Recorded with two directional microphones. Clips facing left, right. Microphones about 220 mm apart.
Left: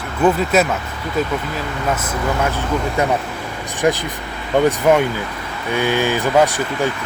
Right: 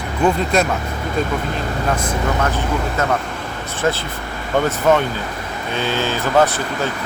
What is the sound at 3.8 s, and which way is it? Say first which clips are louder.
Speech: left 3 dB; 15° left (ahead or behind).